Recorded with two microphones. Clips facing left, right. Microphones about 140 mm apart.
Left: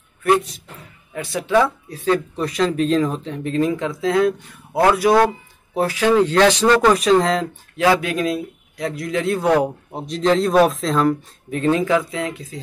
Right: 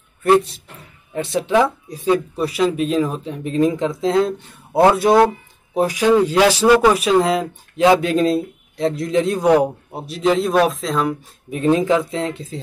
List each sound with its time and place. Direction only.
0.2 s speech: 30° right (ahead or behind); by 11.1 s centre (ahead or behind)
11.5 s speech: 20° right (ahead or behind)